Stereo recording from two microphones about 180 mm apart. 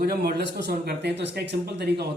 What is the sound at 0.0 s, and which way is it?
Speech, 60° right (ahead or behind).